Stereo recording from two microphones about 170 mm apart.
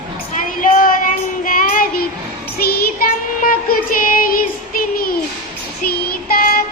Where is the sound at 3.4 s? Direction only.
55° left (ahead or behind).